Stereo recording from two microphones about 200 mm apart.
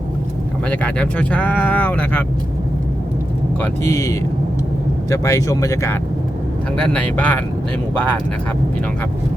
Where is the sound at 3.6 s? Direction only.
15° left (ahead or behind).